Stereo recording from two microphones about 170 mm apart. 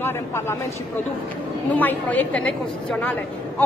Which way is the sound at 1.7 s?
10° left (ahead or behind).